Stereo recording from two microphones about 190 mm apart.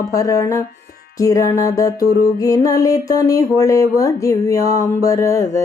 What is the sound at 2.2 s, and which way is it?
Music, 20° left (ahead or behind).